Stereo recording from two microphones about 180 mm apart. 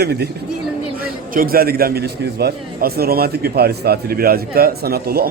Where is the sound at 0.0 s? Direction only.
65° right (ahead or behind).